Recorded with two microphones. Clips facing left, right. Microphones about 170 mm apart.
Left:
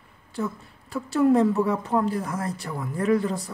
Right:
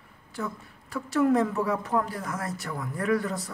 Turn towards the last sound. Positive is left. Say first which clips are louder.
# left 4 dB
turn(degrees=25)  # may be behind; listen again after turning